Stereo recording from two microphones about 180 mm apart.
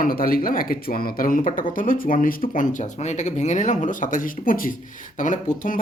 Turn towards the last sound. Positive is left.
turn(degrees=45)  # may be behind; listen again after turning